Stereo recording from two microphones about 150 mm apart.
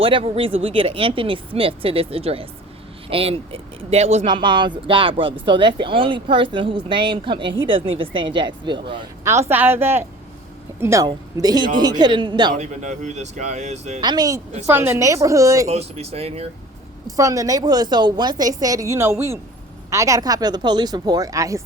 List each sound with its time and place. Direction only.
0.0 s speech: 35° right (ahead or behind)
4.3 s speech: 30° right (ahead or behind)
9.5 s a woman's voice: 15° right (ahead or behind); by 12.5 s 30° right (ahead or behind)
12.5 s speech: 55° right (ahead or behind)
14.0 s a woman's voice: 25° right (ahead or behind)
15.6 s speech: 45° right (ahead or behind)
17.1 s a woman's voice: 25° right (ahead or behind)